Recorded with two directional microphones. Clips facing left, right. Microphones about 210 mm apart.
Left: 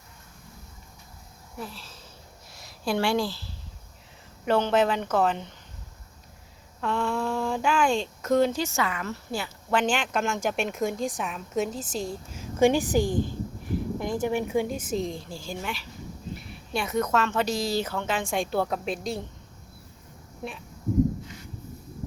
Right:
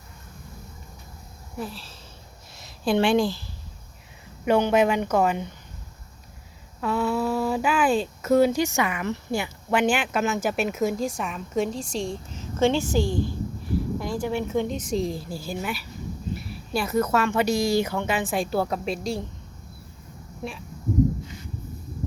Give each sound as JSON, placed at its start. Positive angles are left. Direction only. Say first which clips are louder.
{"t": 1.5, "sound": "a woman's voice", "louder": "right 5 dB", "side_deg": -30}
{"t": 6.8, "sound": "speech", "louder": "right 3 dB", "side_deg": -5}